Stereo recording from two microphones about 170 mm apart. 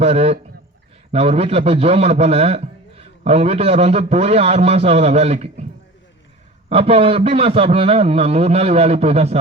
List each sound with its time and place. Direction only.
0.0 s a man's voice: 35° right (ahead or behind)
6.7 s a man's voice: 35° right (ahead or behind)